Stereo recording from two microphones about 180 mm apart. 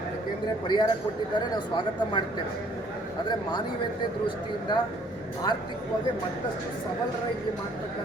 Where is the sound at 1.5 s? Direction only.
25° left (ahead or behind).